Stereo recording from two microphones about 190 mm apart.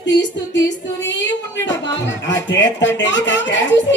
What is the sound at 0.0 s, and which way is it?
Music, 70° left (ahead or behind).